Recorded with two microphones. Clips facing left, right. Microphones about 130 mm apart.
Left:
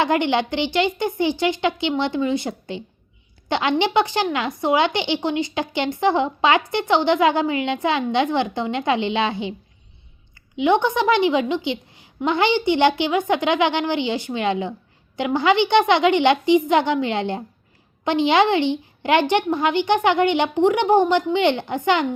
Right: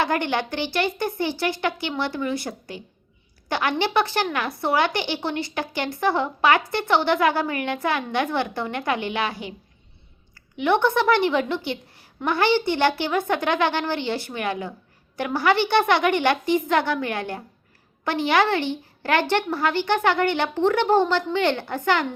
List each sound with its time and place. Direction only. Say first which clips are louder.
0.0 s a woman's voice: left 4 dB; 20° left (ahead or behind)
10.6 s a woman's voice: left 2 dB; 15° left (ahead or behind)